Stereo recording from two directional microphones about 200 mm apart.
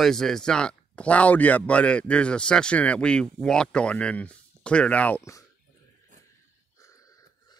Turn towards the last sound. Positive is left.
turn(degrees=15)  # may be behind; listen again after turning